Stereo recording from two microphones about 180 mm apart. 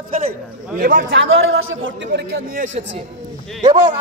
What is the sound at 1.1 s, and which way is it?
A man's voice, 90° right.